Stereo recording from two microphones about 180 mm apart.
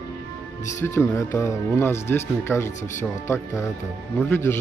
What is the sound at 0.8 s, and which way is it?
Speech, 15° left (ahead or behind).